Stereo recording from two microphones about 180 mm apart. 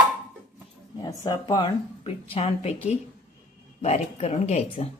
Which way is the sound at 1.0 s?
20° left (ahead or behind).